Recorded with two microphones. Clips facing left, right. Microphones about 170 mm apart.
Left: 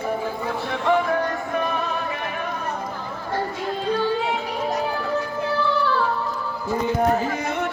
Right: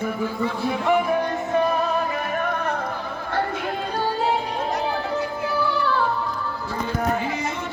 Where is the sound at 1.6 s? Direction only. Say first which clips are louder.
Right 6 dB; 35° right (ahead or behind).